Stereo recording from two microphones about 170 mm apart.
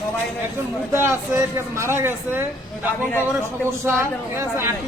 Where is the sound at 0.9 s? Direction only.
15° right (ahead or behind).